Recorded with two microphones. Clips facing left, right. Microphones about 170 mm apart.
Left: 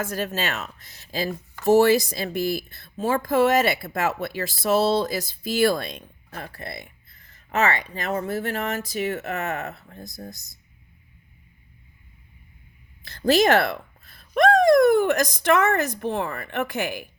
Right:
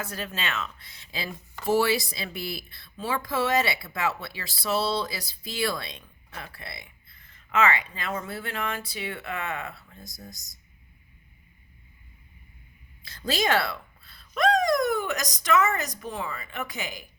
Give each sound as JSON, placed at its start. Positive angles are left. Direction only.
{"t": 0.0, "sound": "speech", "side_deg": 45}
{"t": 13.3, "sound": "speech", "side_deg": 50}